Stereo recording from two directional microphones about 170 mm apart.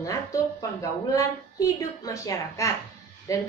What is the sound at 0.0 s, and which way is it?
A woman's voice, 20° left (ahead or behind).